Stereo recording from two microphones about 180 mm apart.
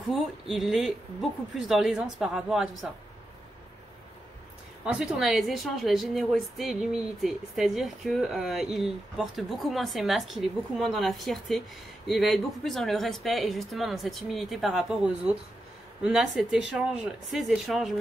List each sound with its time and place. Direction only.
0.1 s a woman's voice: centre (ahead or behind)
4.8 s a woman's voice: 5° right (ahead or behind)